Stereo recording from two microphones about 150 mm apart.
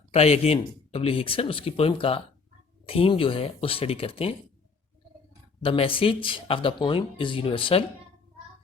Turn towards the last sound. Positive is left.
turn(degrees=35)  # may be behind; listen again after turning